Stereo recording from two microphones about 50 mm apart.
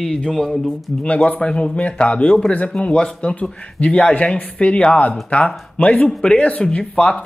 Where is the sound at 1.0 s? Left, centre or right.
Left.